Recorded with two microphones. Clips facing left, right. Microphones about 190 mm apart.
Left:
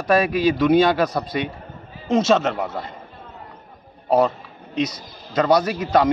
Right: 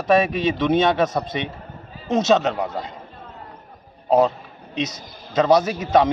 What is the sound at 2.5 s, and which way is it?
Speech, 15° right (ahead or behind).